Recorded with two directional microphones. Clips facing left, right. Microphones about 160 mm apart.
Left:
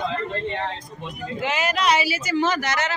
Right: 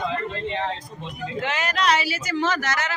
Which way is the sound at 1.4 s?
5° left (ahead or behind).